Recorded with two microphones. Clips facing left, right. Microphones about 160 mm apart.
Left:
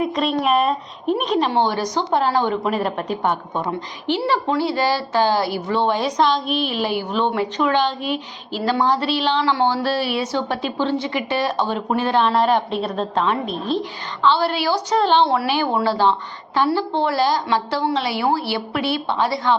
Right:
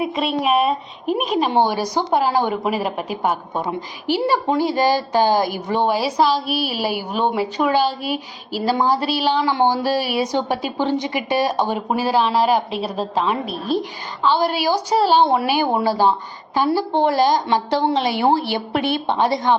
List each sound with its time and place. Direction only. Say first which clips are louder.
0.0 s a woman's voice: left 1 dB; 5° right (ahead or behind)